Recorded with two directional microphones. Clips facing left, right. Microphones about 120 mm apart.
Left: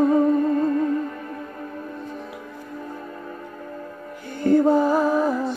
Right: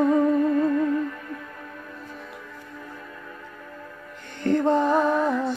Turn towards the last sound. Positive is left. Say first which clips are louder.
# left 2 dB
turn(degrees=5)  # may be behind; listen again after turning